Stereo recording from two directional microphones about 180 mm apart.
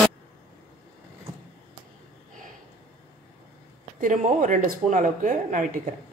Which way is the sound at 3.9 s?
45° right (ahead or behind).